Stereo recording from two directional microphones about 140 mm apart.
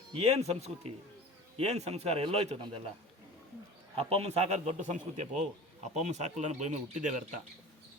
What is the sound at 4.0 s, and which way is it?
Speech, 45° right (ahead or behind).